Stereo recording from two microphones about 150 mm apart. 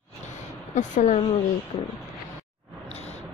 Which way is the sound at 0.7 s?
55° left (ahead or behind).